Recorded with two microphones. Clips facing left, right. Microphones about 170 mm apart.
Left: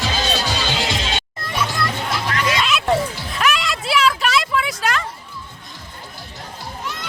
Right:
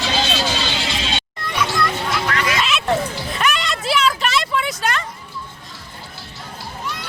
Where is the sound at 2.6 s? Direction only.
Centre (ahead or behind).